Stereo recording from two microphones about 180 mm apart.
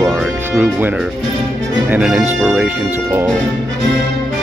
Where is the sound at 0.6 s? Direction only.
10° right (ahead or behind).